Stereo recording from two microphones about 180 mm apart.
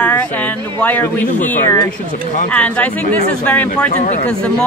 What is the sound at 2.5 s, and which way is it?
Speech, 5° left (ahead or behind).